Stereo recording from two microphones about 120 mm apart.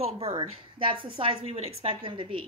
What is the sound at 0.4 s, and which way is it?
A woman's voice, 45° right (ahead or behind).